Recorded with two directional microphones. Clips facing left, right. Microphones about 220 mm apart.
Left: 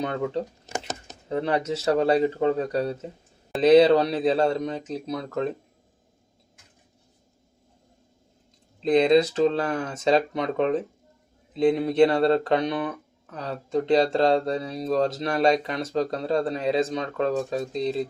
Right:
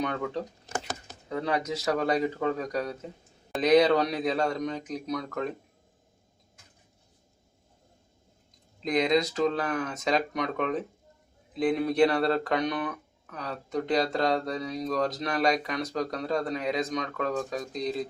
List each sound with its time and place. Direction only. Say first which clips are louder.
0.0 s speech: left 4 dB; 25° left (ahead or behind)
8.8 s speech: left 6 dB; 30° left (ahead or behind)